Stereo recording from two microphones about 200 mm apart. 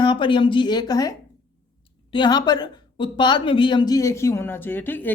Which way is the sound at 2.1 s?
20° left (ahead or behind).